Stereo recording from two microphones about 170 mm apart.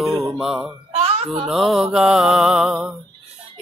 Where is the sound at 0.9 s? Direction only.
35° right (ahead or behind).